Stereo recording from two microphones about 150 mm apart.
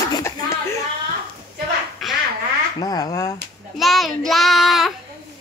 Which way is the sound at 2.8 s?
25° left (ahead or behind).